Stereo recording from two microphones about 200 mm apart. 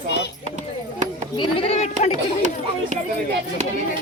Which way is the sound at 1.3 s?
25° left (ahead or behind).